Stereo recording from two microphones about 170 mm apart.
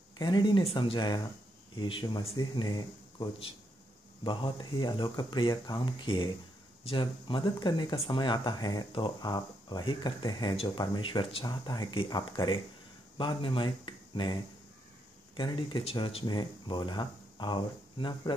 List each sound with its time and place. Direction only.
0.2 s speech: 25° left (ahead or behind)